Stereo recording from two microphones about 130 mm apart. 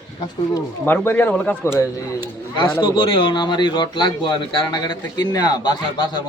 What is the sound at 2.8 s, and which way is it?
A man's voice, 40° left (ahead or behind).